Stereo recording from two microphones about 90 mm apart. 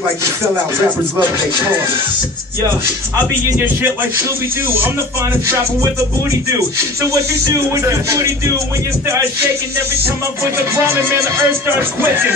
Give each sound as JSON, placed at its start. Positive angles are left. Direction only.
{"t": 3.5, "sound": "music", "side_deg": -20}
{"t": 7.0, "sound": "music", "side_deg": -35}
{"t": 10.0, "sound": "music", "side_deg": -30}